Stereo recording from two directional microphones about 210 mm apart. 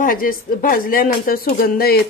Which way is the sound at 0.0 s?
40° left (ahead or behind).